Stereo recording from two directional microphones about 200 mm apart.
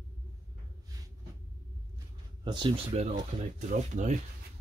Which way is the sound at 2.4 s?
25° right (ahead or behind).